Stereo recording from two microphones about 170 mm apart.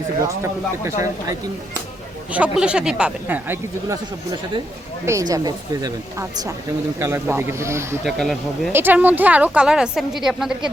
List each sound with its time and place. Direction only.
0.2 s speech: 20° right (ahead or behind)
2.3 s speech: 5° right (ahead or behind)
5.3 s speech: 20° right (ahead or behind)
8.0 s a woman's voice: centre (ahead or behind)
8.7 s a woman's voice: 10° right (ahead or behind)